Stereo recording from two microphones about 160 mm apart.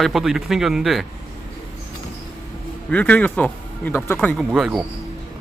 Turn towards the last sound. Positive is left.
turn(degrees=0)  # may be behind; listen again after turning